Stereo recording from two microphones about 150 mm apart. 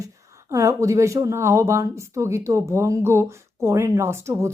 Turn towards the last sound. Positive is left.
turn(degrees=-20)  # may be behind; listen again after turning